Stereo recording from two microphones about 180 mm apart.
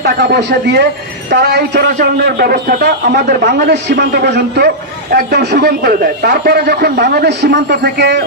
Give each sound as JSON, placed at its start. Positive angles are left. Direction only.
{"t": 0.0, "sound": "a man's voice", "side_deg": -70}